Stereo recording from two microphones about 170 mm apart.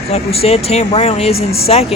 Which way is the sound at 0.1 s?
35° left (ahead or behind).